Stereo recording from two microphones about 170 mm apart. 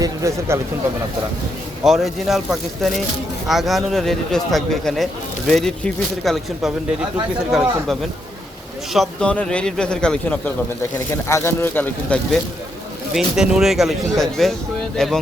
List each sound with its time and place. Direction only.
0.0 s speech: 20° right (ahead or behind)
1.8 s a man's voice: centre (ahead or behind)
8.9 s a man's voice: 5° left (ahead or behind)
13.1 s a man's voice: 5° right (ahead or behind)